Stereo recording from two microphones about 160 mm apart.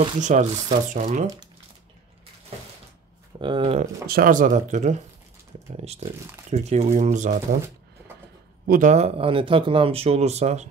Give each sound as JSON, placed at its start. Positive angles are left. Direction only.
{"t": 0.2, "sound": "speech", "side_deg": -50}
{"t": 3.3, "sound": "speech", "side_deg": -30}
{"t": 4.1, "sound": "speech", "side_deg": -60}
{"t": 8.6, "sound": "speech", "side_deg": -55}